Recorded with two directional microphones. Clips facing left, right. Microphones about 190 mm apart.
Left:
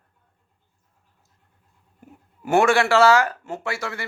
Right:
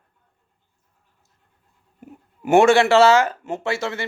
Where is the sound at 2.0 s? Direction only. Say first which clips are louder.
Right 5 dB; 20° right (ahead or behind).